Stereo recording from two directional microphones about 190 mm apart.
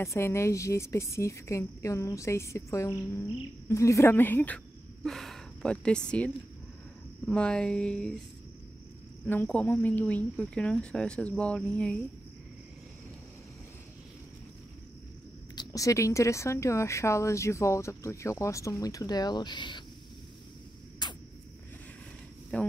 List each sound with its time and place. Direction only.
0.0 s speech: 15° left (ahead or behind)
9.2 s speech: 10° left (ahead or behind)
15.5 s speech: 20° left (ahead or behind)
21.0 s a sound: 20° left (ahead or behind)
22.5 s speech: 5° left (ahead or behind)